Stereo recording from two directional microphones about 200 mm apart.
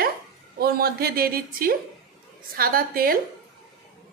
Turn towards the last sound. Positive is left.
turn(degrees=-45)  # may be behind; listen again after turning